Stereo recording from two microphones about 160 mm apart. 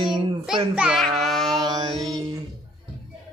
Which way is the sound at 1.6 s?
25° right (ahead or behind).